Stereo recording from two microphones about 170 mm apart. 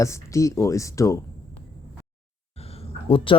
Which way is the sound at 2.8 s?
30° left (ahead or behind).